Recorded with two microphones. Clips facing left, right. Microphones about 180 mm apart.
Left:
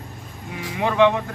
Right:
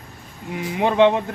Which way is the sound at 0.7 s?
20° right (ahead or behind).